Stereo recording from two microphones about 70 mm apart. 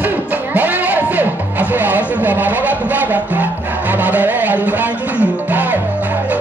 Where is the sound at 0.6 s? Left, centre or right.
Right.